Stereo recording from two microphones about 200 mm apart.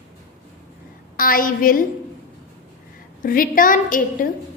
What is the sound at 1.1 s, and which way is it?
Speech, 45° left (ahead or behind).